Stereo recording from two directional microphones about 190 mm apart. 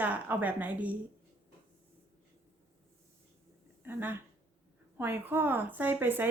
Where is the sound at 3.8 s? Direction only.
10° right (ahead or behind).